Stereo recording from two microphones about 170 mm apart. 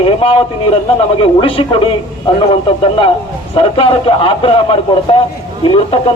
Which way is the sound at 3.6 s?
30° left (ahead or behind).